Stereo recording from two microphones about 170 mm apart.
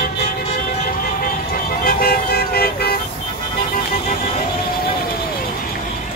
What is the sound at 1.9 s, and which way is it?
Vehicle, 60° left (ahead or behind).